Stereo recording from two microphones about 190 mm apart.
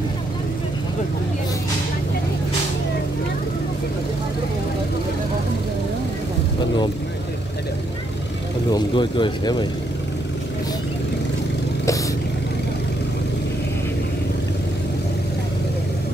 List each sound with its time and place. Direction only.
8.7 s speech: 25° left (ahead or behind)